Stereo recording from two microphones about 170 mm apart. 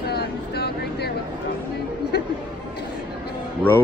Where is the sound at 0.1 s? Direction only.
70° left (ahead or behind).